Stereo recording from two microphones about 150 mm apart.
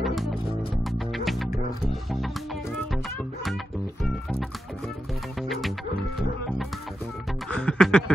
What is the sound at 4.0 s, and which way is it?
Music, centre (ahead or behind).